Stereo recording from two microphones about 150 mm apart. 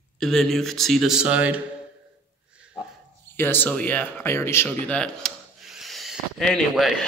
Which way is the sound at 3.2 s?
15° left (ahead or behind).